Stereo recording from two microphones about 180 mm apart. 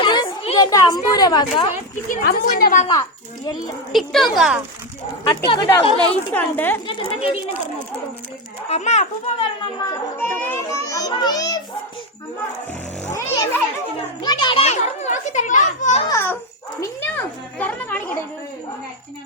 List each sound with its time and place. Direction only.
0.0 s children playing: 25° left (ahead or behind)
2.0 s a woman's voice: 50° left (ahead or behind)
2.8 s a child's voice: 20° left (ahead or behind)
3.9 s speech: centre (ahead or behind)
5.2 s speech: 20° left (ahead or behind)
6.8 s a child's voice: 30° left (ahead or behind)
8.7 s a child's voice: 40° left (ahead or behind)
9.8 s a child's voice: 15° left (ahead or behind)
13.1 s a child's voice: 20° left (ahead or behind)
14.3 s children playing: 25° left (ahead or behind)
16.0 s speech: 15° left (ahead or behind)